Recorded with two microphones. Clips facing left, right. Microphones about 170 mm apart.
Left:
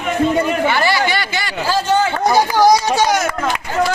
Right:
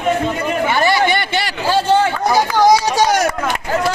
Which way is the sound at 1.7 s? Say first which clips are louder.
Right 2 dB; 30° right (ahead or behind).